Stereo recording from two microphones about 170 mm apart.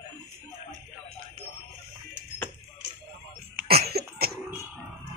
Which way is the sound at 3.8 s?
65° right (ahead or behind).